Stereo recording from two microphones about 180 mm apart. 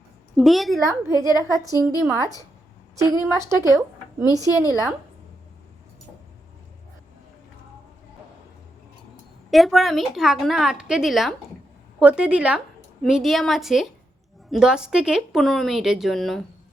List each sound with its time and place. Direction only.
0.3 s a woman's voice: centre (ahead or behind)
1.0 s a woman's voice: 20° left (ahead or behind)
3.0 s speech: 15° right (ahead or behind)
4.4 s a woman's voice: 20° left (ahead or behind)
9.5 s a woman's voice: centre (ahead or behind)